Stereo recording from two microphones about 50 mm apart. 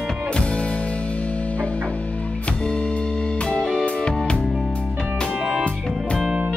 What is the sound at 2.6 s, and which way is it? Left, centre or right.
Music, centre.